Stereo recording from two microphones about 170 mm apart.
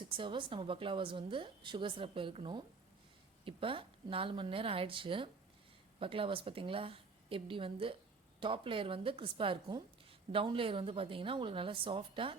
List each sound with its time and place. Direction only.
0.1 s a woman's voice: 30° right (ahead or behind)